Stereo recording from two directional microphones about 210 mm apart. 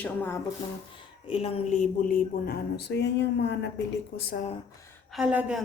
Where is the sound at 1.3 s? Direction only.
25° left (ahead or behind); by 3.7 s 55° left (ahead or behind).